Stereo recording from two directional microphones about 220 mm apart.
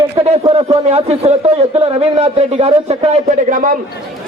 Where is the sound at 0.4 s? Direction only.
25° right (ahead or behind).